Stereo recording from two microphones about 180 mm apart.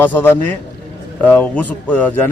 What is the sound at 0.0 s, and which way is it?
A man's voice, 10° left (ahead or behind).